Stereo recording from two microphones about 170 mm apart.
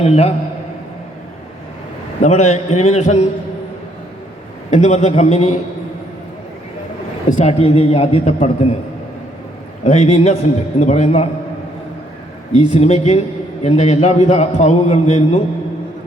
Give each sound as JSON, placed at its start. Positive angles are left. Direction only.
{"t": 0.0, "sound": "a man's voice", "side_deg": 35}
{"t": 2.2, "sound": "a man's voice", "side_deg": 40}
{"t": 4.7, "sound": "a man's voice", "side_deg": 40}
{"t": 7.3, "sound": "a man's voice", "side_deg": 40}
{"t": 9.8, "sound": "a man's voice", "side_deg": 40}
{"t": 12.5, "sound": "a man's voice", "side_deg": 40}